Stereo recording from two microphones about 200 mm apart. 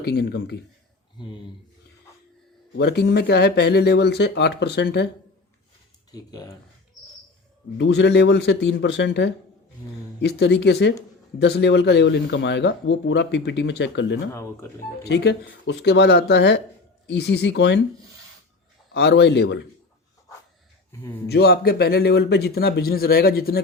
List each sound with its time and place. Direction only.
0.0 s a man's voice: 55° left (ahead or behind)
2.7 s a man's voice: 55° left (ahead or behind)
6.1 s speech: 20° left (ahead or behind)
7.8 s a man's voice: 60° left (ahead or behind)
14.3 s speech: 15° left (ahead or behind)
15.0 s a man's voice: 55° left (ahead or behind)
18.9 s a man's voice: 55° left (ahead or behind)
21.2 s speech: 55° left (ahead or behind)